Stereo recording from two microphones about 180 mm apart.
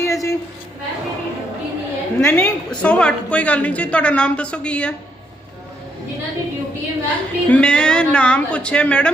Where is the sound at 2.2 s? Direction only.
10° left (ahead or behind).